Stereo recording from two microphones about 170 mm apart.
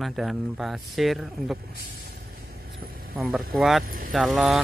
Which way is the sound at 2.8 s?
60° right (ahead or behind).